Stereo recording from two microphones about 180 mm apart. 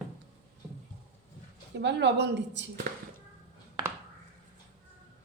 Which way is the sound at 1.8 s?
70° right (ahead or behind).